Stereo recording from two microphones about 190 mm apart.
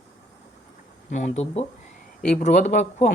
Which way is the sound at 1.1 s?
35° left (ahead or behind).